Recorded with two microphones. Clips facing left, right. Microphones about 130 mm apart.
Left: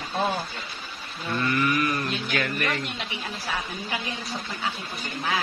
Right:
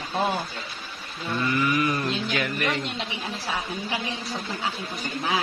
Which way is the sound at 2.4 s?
10° right (ahead or behind).